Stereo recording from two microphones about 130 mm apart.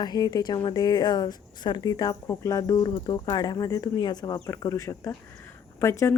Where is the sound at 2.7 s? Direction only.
40° left (ahead or behind); by 6.2 s 20° left (ahead or behind).